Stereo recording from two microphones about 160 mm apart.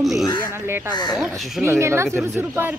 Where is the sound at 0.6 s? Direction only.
15° right (ahead or behind).